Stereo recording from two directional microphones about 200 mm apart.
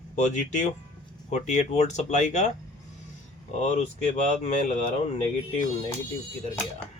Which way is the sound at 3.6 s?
35° left (ahead or behind).